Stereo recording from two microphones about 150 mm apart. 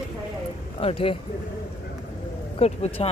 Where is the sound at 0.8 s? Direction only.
35° left (ahead or behind).